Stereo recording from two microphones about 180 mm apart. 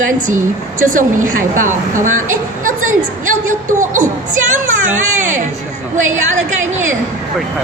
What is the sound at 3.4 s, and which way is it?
Speech, 45° right (ahead or behind).